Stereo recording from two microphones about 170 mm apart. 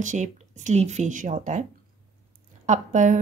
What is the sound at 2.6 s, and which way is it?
Speech, 45° right (ahead or behind).